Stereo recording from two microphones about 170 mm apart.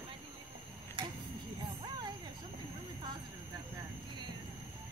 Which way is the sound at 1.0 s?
30° right (ahead or behind).